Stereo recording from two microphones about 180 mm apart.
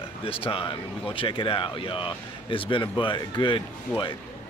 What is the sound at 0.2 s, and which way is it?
Speech, 30° left (ahead or behind).